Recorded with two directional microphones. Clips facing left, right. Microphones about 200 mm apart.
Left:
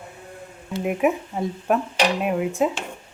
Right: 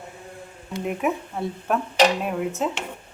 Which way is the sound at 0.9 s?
10° left (ahead or behind).